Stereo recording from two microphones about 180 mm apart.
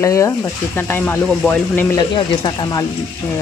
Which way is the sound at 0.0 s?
15° left (ahead or behind).